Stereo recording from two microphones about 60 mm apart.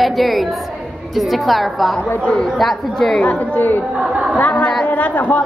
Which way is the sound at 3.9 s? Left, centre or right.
Right.